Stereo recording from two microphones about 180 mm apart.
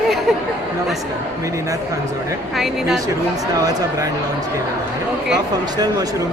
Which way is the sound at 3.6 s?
20° right (ahead or behind).